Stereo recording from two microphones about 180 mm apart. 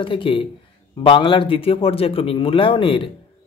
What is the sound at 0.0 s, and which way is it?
A man's voice, 30° left (ahead or behind).